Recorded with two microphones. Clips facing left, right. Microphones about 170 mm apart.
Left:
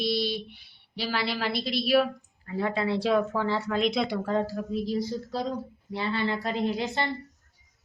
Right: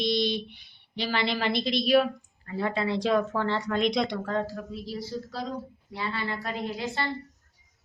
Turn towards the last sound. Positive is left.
turn(degrees=20)  # may be behind; listen again after turning